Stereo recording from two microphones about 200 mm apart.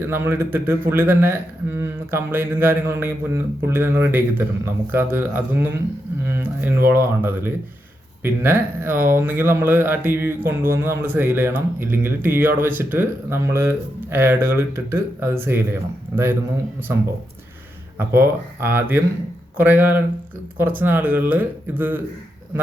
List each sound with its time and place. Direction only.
0.0 s speech: 10° right (ahead or behind)